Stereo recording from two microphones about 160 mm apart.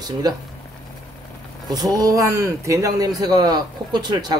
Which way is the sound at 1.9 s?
20° right (ahead or behind).